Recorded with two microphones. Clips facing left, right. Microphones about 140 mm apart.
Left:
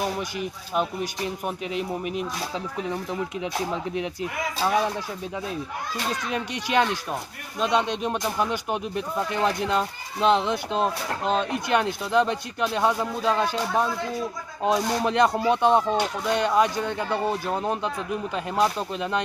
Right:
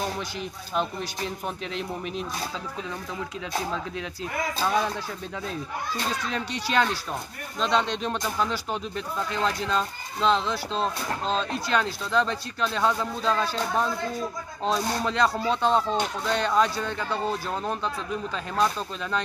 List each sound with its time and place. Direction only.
0.0 s speech: 10° left (ahead or behind)
3.7 s speech: 20° left (ahead or behind)
4.6 s speech: 10° left (ahead or behind)
6.3 s speech: 15° left (ahead or behind)